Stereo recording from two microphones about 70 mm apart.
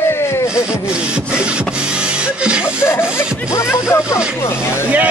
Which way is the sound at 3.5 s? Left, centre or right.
Left.